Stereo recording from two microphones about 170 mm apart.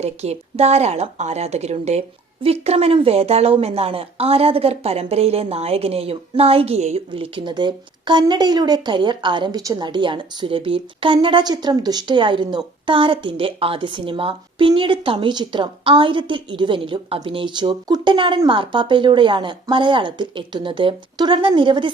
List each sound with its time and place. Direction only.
0.0 s a woman's voice: 40° right (ahead or behind)